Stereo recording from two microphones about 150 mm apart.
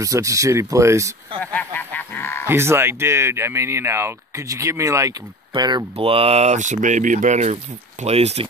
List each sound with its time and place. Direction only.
0.0 s speech: 20° right (ahead or behind)
1.4 s honk: 10° left (ahead or behind)
2.4 s speech: 15° right (ahead or behind)
5.9 s speech: 40° right (ahead or behind)